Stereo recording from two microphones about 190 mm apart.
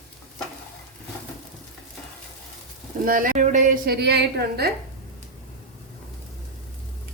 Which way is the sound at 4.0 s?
60° right (ahead or behind).